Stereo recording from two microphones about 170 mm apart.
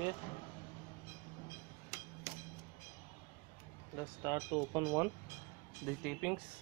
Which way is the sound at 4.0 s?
15° right (ahead or behind).